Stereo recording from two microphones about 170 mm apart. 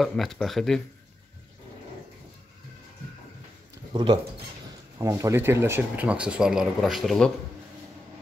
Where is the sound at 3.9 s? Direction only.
30° right (ahead or behind).